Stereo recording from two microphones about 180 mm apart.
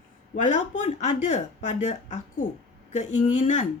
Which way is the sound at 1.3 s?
40° left (ahead or behind).